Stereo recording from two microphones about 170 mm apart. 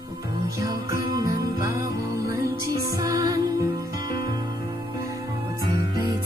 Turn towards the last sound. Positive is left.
turn(degrees=-25)  # may be behind; listen again after turning